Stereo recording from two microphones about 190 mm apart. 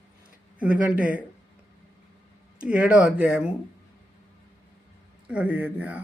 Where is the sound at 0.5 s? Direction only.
5° right (ahead or behind).